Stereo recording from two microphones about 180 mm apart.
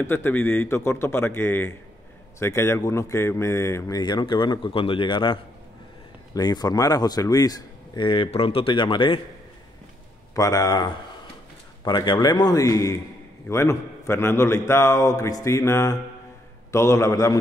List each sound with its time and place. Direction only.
0.0 s speech: 10° left (ahead or behind); by 9.2 s 25° left (ahead or behind)
10.3 s speech: 20° left (ahead or behind)